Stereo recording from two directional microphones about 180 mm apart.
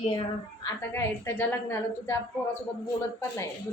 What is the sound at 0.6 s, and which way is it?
A woman's voice, 15° left (ahead or behind).